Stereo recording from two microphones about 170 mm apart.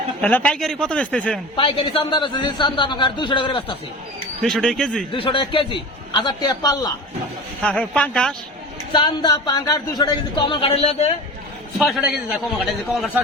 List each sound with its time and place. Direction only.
0.2 s a man's voice: 10° left (ahead or behind)
1.5 s a man's voice: 30° left (ahead or behind)
4.4 s speech: centre (ahead or behind)
5.1 s a man's voice: 30° left (ahead or behind)
7.6 s speech: 5° left (ahead or behind)
8.9 s a man's voice: 25° left (ahead or behind)
10.8 s a man's voice: 40° left (ahead or behind)
11.8 s speech: centre (ahead or behind)